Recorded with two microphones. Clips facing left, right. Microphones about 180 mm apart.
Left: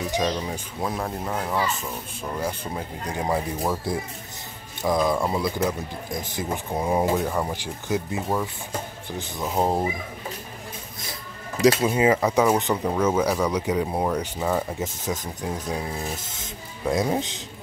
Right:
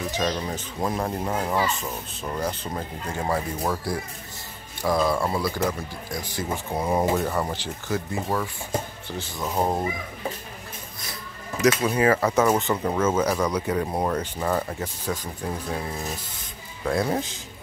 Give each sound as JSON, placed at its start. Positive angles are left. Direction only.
{"t": 0.4, "sound": "speech", "side_deg": 5}
{"t": 2.3, "sound": "speech", "side_deg": 10}
{"t": 11.6, "sound": "speech", "side_deg": 30}
{"t": 11.9, "sound": "speech", "side_deg": 20}
{"t": 14.8, "sound": "speech", "side_deg": 20}
{"t": 16.8, "sound": "speech", "side_deg": 15}